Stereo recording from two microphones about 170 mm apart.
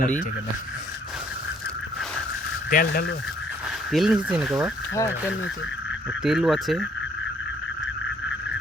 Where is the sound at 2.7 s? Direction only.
60° left (ahead or behind).